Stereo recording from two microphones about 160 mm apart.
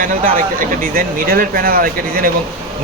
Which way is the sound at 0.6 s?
65° right (ahead or behind).